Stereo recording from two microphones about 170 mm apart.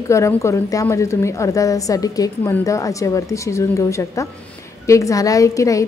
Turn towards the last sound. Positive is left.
turn(degrees=20)  # may be behind; listen again after turning